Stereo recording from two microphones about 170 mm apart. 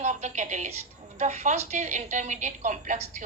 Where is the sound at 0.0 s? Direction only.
45° right (ahead or behind).